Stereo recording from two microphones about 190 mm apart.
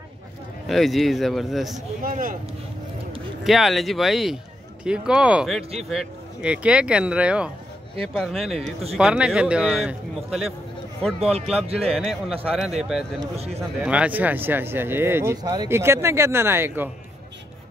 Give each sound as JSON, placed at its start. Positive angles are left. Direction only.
{"t": 0.7, "sound": "speech", "side_deg": 0}
{"t": 2.0, "sound": "speech", "side_deg": -45}
{"t": 3.4, "sound": "speech", "side_deg": 0}
{"t": 11.1, "sound": "speech", "side_deg": -30}
{"t": 11.8, "sound": "speech", "side_deg": 0}